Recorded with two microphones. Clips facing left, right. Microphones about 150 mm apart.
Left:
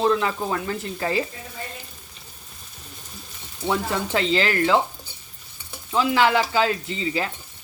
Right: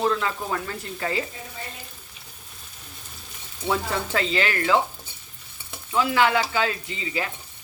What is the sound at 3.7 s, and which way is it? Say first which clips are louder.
Speech: left 2 dB; 25° left (ahead or behind).